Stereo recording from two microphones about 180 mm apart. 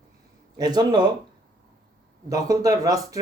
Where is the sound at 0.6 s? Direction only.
25° right (ahead or behind).